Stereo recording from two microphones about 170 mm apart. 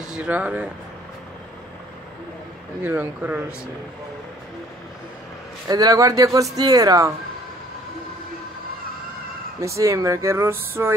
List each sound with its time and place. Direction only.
0.0 s speech: 5° right (ahead or behind)
2.8 s speech: 10° right (ahead or behind)
5.7 s speech: 20° right (ahead or behind)
9.6 s speech: 20° right (ahead or behind)